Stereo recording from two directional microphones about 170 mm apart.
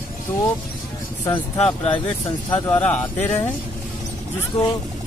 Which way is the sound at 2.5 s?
10° left (ahead or behind).